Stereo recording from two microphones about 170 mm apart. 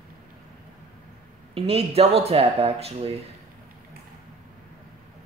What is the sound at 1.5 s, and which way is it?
Speech, 35° right (ahead or behind).